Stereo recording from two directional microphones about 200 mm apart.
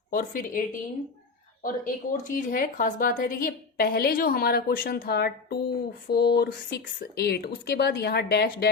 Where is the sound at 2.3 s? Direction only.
45° left (ahead or behind).